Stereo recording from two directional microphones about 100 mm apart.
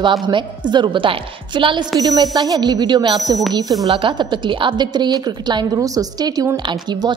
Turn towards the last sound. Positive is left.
turn(degrees=-40)  # may be behind; listen again after turning